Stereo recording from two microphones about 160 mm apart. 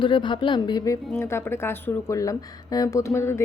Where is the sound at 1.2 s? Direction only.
15° left (ahead or behind).